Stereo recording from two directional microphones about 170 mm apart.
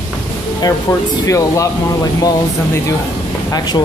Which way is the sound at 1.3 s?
20° left (ahead or behind).